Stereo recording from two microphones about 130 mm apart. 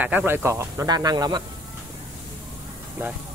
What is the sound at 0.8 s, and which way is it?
Speech, 30° right (ahead or behind).